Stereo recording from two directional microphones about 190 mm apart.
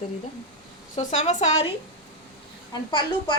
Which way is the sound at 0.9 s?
40° left (ahead or behind).